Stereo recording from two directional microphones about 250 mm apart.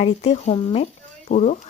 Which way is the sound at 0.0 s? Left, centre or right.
Left.